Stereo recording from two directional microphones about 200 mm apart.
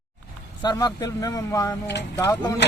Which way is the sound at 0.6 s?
20° left (ahead or behind).